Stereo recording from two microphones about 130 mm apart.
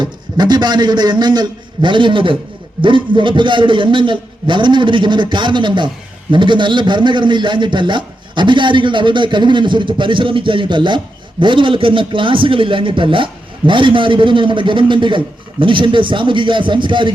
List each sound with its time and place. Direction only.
0.0 s a man's voice: 35° right (ahead or behind)